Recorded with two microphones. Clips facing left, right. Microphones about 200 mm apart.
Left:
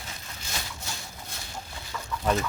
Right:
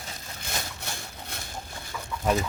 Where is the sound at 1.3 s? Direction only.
60° right (ahead or behind).